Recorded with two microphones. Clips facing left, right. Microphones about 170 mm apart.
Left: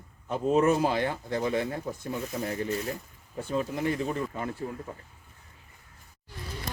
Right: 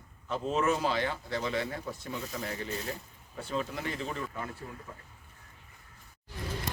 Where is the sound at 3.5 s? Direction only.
15° left (ahead or behind).